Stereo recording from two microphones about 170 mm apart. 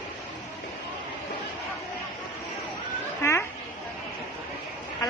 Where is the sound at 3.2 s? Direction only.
15° left (ahead or behind).